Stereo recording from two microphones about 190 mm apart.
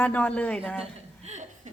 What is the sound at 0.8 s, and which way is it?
Chuckle, 35° right (ahead or behind).